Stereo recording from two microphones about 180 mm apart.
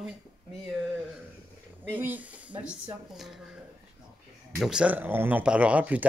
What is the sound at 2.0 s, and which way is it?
Speech, 10° right (ahead or behind).